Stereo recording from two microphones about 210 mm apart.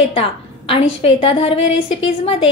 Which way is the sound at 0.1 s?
25° left (ahead or behind).